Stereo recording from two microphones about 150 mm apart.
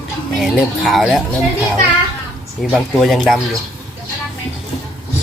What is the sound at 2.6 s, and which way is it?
Speech, centre (ahead or behind).